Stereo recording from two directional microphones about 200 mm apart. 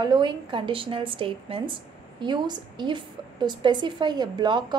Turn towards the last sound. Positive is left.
turn(degrees=-20)  # may be behind; listen again after turning